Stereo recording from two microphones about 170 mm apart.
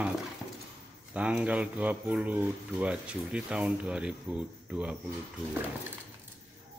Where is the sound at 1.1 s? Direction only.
5° right (ahead or behind).